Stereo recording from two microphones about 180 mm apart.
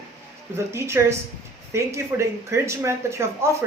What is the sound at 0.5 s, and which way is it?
Speech, 15° right (ahead or behind).